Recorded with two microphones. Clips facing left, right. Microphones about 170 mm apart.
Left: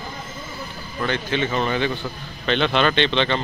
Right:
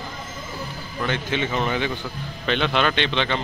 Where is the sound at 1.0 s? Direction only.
15° right (ahead or behind).